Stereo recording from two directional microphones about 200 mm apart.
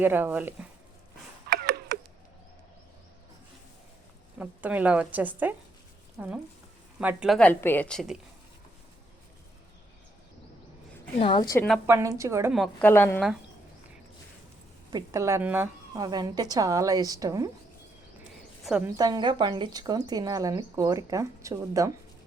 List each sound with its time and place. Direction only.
0.0 s a woman's voice: 10° right (ahead or behind)
1.5 s a sound: 55° right (ahead or behind)
4.4 s a woman's voice: 10° right (ahead or behind)
11.2 s a woman's voice: 25° left (ahead or behind)
11.5 s a woman's voice: 5° left (ahead or behind)
11.9 s a woman's voice: 15° right (ahead or behind)
12.5 s a woman's voice: centre (ahead or behind)
12.8 s a woman's voice: 10° left (ahead or behind)
14.8 s a woman's voice: 15° right (ahead or behind)
18.6 s a woman's voice: 5° right (ahead or behind)
18.9 s speech: 20° right (ahead or behind)